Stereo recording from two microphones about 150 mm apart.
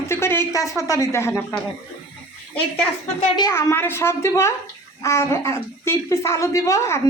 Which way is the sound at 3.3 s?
20° left (ahead or behind).